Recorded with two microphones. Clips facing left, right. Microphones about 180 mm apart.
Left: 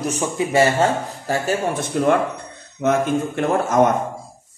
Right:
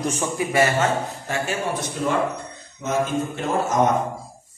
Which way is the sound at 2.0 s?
60° left (ahead or behind).